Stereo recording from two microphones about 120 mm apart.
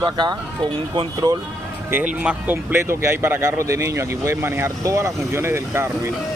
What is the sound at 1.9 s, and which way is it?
Speech, 10° right (ahead or behind).